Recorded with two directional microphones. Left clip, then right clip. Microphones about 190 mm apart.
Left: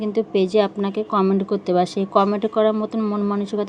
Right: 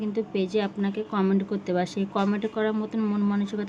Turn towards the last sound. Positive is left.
turn(degrees=25)  # may be behind; listen again after turning